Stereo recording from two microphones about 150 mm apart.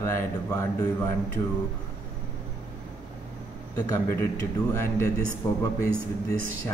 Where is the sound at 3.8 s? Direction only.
20° left (ahead or behind).